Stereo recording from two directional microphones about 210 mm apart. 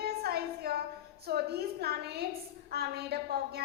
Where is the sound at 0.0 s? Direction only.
50° right (ahead or behind).